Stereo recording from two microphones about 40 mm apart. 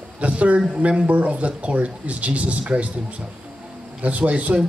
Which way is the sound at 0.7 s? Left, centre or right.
Right.